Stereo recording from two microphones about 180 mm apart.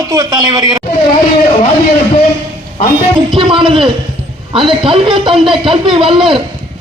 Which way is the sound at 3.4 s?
30° right (ahead or behind).